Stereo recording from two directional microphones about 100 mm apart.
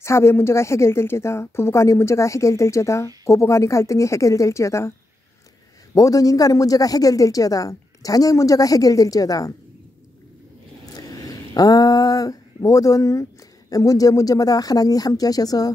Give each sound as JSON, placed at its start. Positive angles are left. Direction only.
{"t": 0.0, "sound": "speech", "side_deg": 25}
{"t": 5.9, "sound": "speech", "side_deg": 35}
{"t": 11.0, "sound": "a sound", "side_deg": 40}
{"t": 12.6, "sound": "speech", "side_deg": 35}